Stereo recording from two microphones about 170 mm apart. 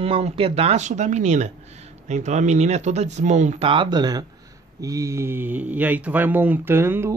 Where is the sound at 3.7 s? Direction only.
25° right (ahead or behind).